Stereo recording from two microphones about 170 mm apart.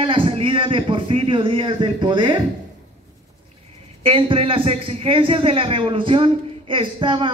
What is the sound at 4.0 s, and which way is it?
A man's voice, 30° right (ahead or behind).